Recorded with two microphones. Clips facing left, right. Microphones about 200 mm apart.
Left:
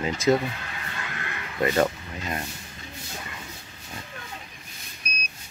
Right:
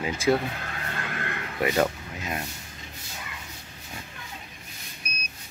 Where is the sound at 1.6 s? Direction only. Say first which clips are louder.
Left 2 dB; 5° right (ahead or behind).